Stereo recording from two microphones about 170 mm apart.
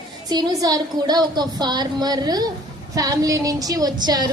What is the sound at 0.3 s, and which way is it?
A woman's voice, 25° right (ahead or behind).